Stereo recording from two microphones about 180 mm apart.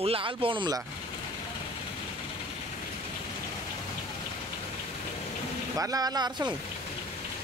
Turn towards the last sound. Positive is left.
turn(degrees=-25)  # may be behind; listen again after turning